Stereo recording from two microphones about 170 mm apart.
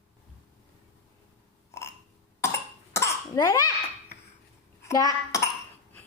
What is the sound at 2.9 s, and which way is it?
Cough, 20° left (ahead or behind).